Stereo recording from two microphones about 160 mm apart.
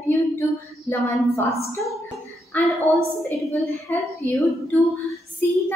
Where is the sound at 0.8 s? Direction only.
20° left (ahead or behind).